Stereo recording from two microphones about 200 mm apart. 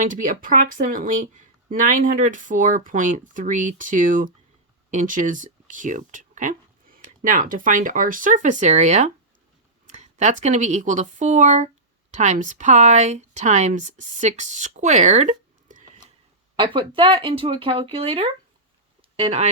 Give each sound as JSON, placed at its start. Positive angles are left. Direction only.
{"t": 0.0, "sound": "speech", "side_deg": -40}
{"t": 16.6, "sound": "speech", "side_deg": -25}